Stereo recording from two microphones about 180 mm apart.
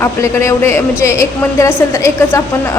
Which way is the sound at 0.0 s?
15° left (ahead or behind).